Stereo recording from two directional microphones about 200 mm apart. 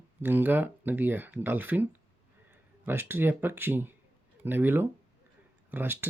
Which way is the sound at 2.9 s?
10° right (ahead or behind).